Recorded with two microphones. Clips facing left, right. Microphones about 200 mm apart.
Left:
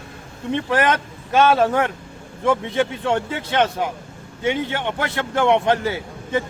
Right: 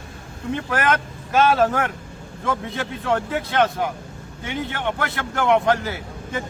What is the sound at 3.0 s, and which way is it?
Speech, 25° left (ahead or behind).